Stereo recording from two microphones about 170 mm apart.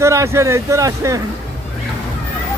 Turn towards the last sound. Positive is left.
turn(degrees=-20)  # may be behind; listen again after turning